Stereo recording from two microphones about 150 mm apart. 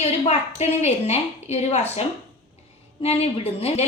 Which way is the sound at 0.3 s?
45° left (ahead or behind).